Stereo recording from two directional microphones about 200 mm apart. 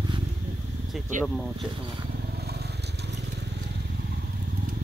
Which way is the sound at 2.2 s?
55° right (ahead or behind).